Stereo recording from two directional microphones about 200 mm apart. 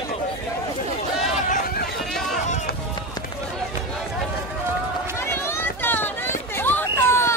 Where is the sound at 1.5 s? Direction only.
45° left (ahead or behind).